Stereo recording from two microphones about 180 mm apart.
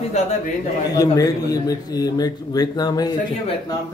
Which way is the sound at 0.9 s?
20° left (ahead or behind).